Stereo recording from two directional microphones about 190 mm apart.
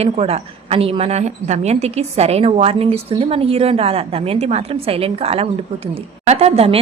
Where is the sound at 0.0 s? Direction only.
30° right (ahead or behind).